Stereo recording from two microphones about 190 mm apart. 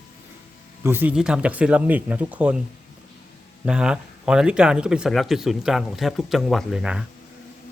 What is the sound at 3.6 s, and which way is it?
Speech, 5° right (ahead or behind).